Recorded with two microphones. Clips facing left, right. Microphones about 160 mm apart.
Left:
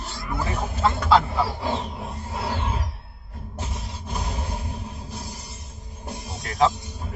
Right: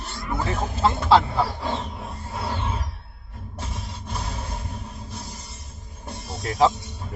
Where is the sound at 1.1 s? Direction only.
Centre (ahead or behind).